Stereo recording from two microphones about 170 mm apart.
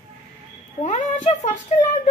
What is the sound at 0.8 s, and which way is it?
Speech, 40° left (ahead or behind).